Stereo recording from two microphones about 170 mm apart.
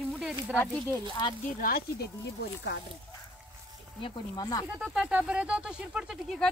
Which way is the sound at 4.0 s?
20° left (ahead or behind).